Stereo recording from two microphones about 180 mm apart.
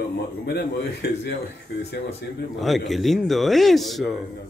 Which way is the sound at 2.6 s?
Centre (ahead or behind).